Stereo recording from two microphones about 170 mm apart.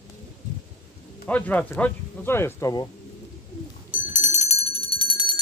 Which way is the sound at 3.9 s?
50° left (ahead or behind).